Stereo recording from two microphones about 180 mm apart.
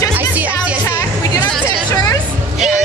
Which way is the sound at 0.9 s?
15° left (ahead or behind).